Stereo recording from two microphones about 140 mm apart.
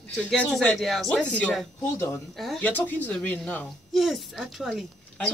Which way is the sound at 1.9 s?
15° left (ahead or behind).